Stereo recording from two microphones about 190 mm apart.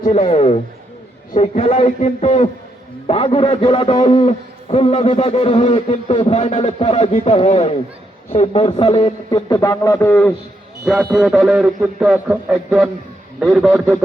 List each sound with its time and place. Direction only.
0.0 s a man's voice: 35° left (ahead or behind); by 10.3 s 10° left (ahead or behind)
10.8 s a man's voice: 5° right (ahead or behind)